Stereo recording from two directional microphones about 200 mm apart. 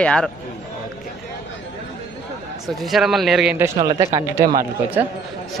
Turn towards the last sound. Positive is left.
turn(degrees=-10)  # may be behind; listen again after turning